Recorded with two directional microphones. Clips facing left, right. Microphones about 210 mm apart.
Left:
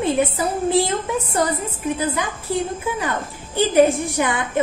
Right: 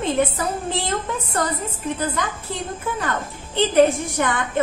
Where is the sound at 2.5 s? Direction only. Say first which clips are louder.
Left 7 dB; 10° left (ahead or behind).